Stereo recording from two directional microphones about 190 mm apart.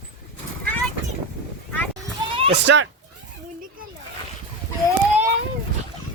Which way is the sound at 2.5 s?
65° right (ahead or behind).